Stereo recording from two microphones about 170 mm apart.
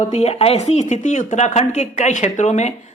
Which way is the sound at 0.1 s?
40° left (ahead or behind).